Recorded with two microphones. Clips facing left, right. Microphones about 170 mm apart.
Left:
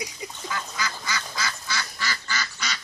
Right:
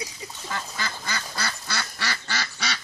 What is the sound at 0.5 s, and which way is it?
Duck, 45° right (ahead or behind).